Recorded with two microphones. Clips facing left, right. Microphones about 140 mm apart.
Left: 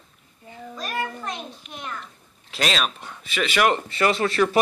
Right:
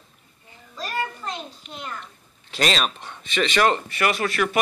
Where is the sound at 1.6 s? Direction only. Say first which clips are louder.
Right 1 dB; centre (ahead or behind).